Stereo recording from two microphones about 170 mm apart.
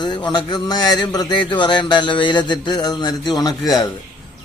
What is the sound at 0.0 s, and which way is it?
Speech, 25° left (ahead or behind).